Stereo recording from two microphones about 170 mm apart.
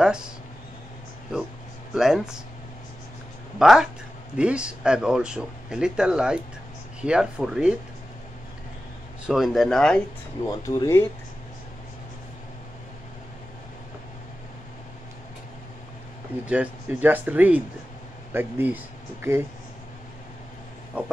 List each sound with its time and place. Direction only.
0.0 s speech: 5° right (ahead or behind)
2.0 s speech: 5° right (ahead or behind)
3.5 s speech: 5° right (ahead or behind)
9.2 s speech: centre (ahead or behind)
10.4 s speech: 20° left (ahead or behind)
16.4 s speech: 10° right (ahead or behind)
20.9 s speech: 5° right (ahead or behind)